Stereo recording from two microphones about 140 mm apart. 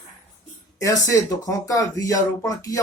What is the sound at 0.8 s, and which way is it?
Speech, 25° left (ahead or behind).